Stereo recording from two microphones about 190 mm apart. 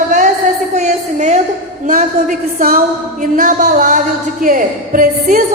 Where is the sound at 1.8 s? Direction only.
45° right (ahead or behind).